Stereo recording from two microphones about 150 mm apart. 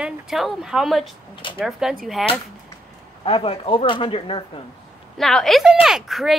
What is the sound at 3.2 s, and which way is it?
Speech, 40° left (ahead or behind).